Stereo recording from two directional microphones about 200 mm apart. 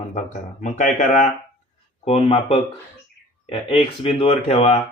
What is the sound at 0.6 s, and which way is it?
Speech, 40° left (ahead or behind).